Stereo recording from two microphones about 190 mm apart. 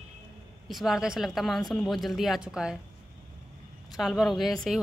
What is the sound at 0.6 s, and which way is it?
Speech, centre (ahead or behind).